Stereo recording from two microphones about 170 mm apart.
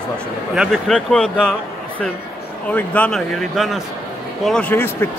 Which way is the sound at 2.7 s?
10° left (ahead or behind).